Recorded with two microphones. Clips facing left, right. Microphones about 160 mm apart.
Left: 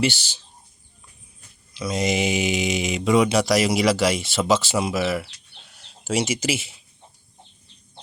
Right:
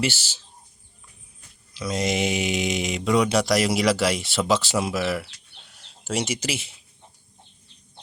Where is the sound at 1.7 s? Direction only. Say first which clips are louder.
Left 2 dB; centre (ahead or behind).